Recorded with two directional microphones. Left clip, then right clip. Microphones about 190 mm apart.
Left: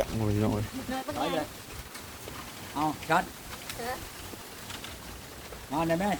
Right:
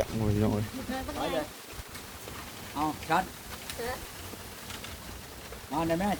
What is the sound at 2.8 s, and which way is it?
Speech, 40° left (ahead or behind).